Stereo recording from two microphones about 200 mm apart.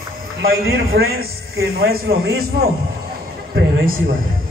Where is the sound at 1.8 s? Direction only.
50° right (ahead or behind).